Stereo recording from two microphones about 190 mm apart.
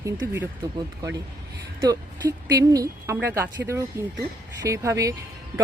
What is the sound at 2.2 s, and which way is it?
Speech, 15° right (ahead or behind).